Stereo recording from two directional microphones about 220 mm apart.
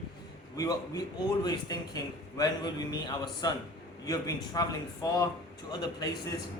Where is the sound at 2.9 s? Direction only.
20° left (ahead or behind).